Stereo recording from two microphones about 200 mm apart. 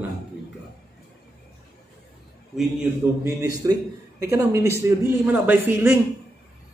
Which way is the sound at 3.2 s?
15° right (ahead or behind).